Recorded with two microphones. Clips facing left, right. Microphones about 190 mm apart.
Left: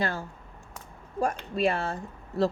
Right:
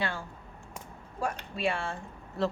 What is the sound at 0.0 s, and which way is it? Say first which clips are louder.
Speech: left 4 dB; 40° left (ahead or behind).